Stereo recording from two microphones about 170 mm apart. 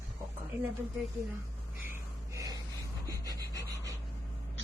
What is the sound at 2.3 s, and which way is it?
Gasp, 20° right (ahead or behind).